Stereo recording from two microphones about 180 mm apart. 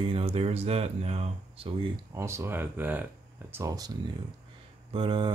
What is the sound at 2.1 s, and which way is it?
Speech, 15° right (ahead or behind).